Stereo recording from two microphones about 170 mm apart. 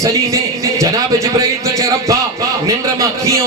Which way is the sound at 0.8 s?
20° right (ahead or behind).